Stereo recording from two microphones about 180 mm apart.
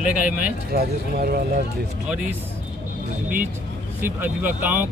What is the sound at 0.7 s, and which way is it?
Speech, 60° right (ahead or behind).